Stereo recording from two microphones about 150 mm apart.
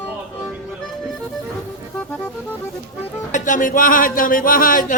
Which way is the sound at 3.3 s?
60° left (ahead or behind).